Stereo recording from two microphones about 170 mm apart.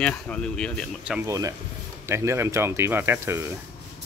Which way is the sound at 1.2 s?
20° right (ahead or behind).